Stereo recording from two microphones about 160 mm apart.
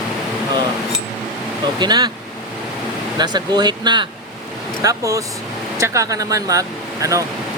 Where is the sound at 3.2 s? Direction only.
25° right (ahead or behind).